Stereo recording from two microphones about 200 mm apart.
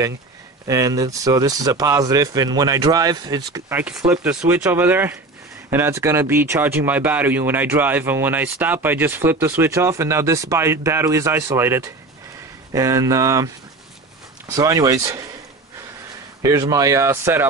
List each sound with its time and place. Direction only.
0.7 s speech: 15° right (ahead or behind)
14.5 s speech: 20° right (ahead or behind)
16.4 s speech: 15° right (ahead or behind)